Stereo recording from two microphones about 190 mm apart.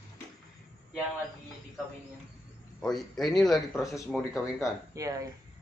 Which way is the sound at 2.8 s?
Centre (ahead or behind).